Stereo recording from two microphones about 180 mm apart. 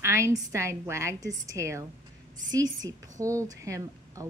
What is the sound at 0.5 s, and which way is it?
A woman's voice, 15° right (ahead or behind).